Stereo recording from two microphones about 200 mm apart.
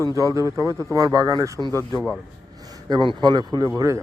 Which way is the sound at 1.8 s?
10° left (ahead or behind).